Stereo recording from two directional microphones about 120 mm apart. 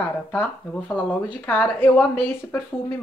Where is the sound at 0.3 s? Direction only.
15° left (ahead or behind).